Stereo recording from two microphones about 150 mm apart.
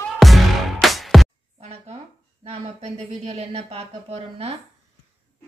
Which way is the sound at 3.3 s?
40° right (ahead or behind).